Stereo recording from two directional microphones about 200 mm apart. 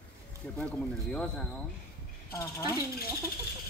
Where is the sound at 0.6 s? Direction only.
5° left (ahead or behind).